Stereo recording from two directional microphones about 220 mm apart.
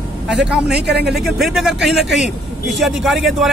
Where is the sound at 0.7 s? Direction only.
50° right (ahead or behind).